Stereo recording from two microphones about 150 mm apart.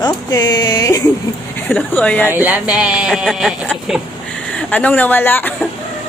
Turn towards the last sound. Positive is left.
turn(degrees=10)  # may be behind; listen again after turning